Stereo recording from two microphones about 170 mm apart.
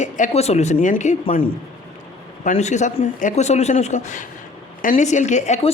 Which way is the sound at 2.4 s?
45° left (ahead or behind).